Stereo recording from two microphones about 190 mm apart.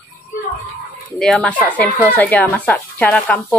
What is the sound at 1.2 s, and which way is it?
Speech, 5° left (ahead or behind).